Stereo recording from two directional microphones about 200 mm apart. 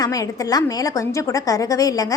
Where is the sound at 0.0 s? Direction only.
15° left (ahead or behind).